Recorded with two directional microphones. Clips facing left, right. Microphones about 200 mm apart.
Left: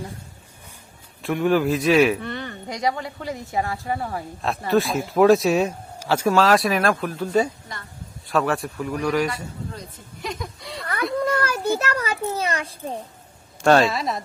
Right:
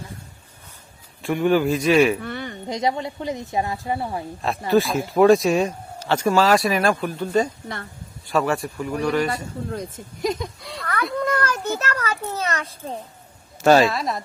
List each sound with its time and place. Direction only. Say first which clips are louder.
1.2 s speech: right 1 dB; centre (ahead or behind)
2.4 s a woman's voice: right 2 dB; 20° right (ahead or behind)
4.4 s speech: right 1 dB; centre (ahead or behind)
9.3 s a woman's voice: right 5 dB; 45° right (ahead or behind)
10.6 s speech: even; centre (ahead or behind)
11.0 s a sound: left 1 dB; 5° left (ahead or behind)
12.4 s a child's voice: left 1 dB; 10° left (ahead or behind)
13.6 s speech: right 1 dB; 5° right (ahead or behind)